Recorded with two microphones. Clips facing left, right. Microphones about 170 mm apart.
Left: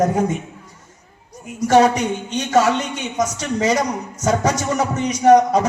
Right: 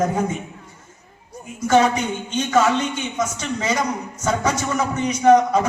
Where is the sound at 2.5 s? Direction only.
40° left (ahead or behind).